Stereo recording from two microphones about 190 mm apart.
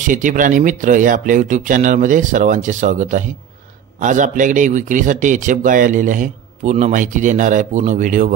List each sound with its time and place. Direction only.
0.0 s a man's voice: 45° right (ahead or behind)